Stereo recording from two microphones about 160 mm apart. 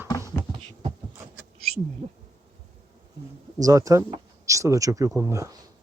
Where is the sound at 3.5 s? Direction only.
20° right (ahead or behind).